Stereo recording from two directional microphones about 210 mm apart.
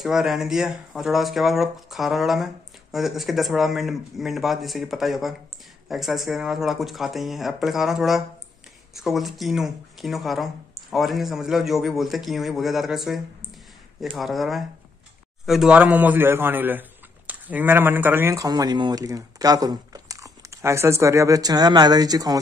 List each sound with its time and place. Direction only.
0.0 s a man's voice: centre (ahead or behind); by 22.4 s 15° right (ahead or behind)